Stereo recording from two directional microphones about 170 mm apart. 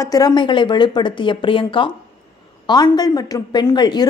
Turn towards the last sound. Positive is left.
turn(degrees=25)  # may be behind; listen again after turning